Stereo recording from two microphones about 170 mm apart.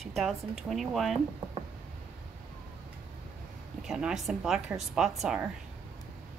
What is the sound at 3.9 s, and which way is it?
A woman's voice, centre (ahead or behind).